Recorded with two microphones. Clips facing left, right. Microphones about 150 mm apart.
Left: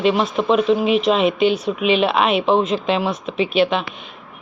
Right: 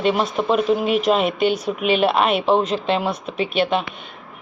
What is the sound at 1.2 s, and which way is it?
Speech, 40° right (ahead or behind).